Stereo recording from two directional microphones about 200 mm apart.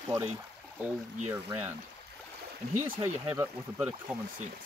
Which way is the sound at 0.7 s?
10° right (ahead or behind).